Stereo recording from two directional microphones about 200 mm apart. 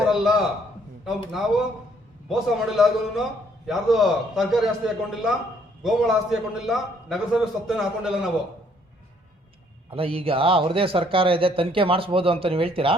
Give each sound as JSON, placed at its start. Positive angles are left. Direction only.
{"t": 0.0, "sound": "a man's voice", "side_deg": 0}
{"t": 9.9, "sound": "a man's voice", "side_deg": -30}